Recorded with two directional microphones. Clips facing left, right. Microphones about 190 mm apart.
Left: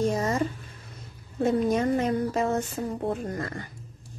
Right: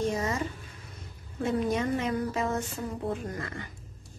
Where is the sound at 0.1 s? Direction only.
40° left (ahead or behind).